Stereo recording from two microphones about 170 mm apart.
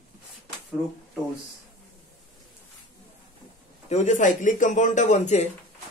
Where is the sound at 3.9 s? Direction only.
45° left (ahead or behind).